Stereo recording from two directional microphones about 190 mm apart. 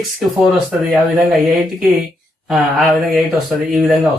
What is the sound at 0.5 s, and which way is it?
Speech, centre (ahead or behind).